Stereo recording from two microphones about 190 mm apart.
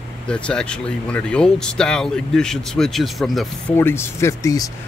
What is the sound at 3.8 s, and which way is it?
Speech, 10° left (ahead or behind).